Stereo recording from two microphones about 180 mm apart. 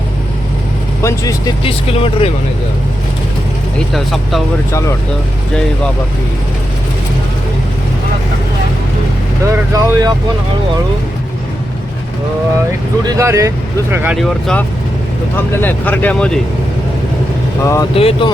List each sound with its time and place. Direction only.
1.0 s speech: 20° left (ahead or behind)
1.6 s speech: 30° left (ahead or behind)
3.9 s speech: centre (ahead or behind)
4.7 s speech: 15° left (ahead or behind)
9.5 s speech: 20° right (ahead or behind)
13.1 s speech: 15° right (ahead or behind)
14.2 s speech: centre (ahead or behind)
17.6 s speech: 15° left (ahead or behind)
17.9 s speech: 30° left (ahead or behind)